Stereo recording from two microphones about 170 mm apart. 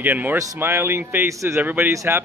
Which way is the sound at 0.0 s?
10° right (ahead or behind).